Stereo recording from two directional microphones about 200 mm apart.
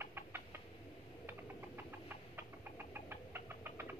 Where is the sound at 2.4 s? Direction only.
10° right (ahead or behind).